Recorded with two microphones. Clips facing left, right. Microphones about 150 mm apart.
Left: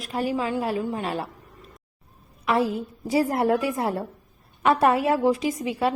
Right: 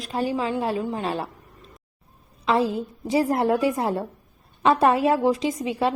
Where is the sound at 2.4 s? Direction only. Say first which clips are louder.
Right 1 dB; 25° right (ahead or behind).